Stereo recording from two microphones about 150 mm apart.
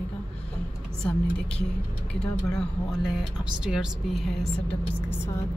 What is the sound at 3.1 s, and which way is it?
Speech, 5° right (ahead or behind).